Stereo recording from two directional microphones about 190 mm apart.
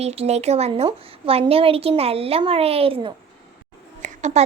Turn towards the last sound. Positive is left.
turn(degrees=-35)  # may be behind; listen again after turning